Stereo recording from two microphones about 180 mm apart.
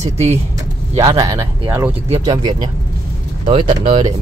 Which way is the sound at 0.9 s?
20° right (ahead or behind).